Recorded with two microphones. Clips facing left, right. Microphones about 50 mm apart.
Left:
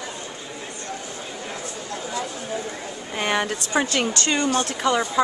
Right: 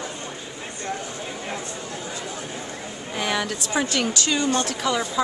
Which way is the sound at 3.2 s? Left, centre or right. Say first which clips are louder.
Left 2 dB; left.